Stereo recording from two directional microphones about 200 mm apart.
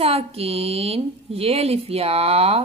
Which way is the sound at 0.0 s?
30° right (ahead or behind).